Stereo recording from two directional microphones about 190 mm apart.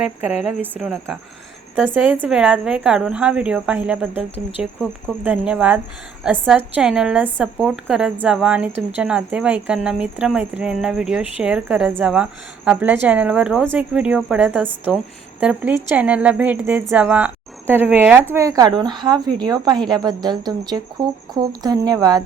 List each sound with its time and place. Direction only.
0.0 s a woman's voice: 5° right (ahead or behind)